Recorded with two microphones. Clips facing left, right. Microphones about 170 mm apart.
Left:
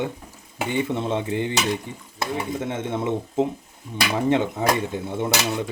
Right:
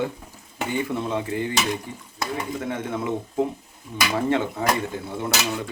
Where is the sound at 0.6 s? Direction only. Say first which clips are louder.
Left 2 dB; 25° left (ahead or behind).